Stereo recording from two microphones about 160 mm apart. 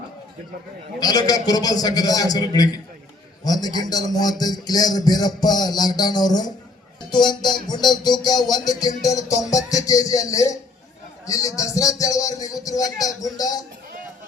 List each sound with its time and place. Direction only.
0.9 s a man's voice: 25° left (ahead or behind)